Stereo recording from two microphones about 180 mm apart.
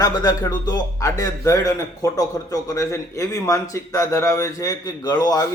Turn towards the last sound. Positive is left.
turn(degrees=20)  # may be behind; listen again after turning